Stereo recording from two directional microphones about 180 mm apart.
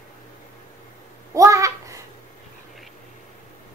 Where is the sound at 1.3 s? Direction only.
15° right (ahead or behind).